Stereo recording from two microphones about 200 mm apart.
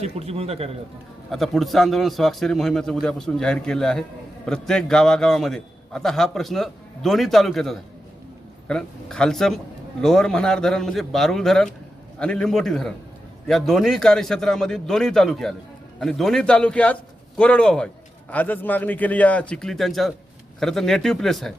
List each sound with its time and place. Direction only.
0.0 s speech: 30° right (ahead or behind)
1.3 s a man's voice: centre (ahead or behind)